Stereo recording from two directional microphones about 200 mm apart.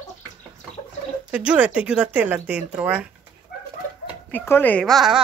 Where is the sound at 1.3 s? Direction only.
5° right (ahead or behind).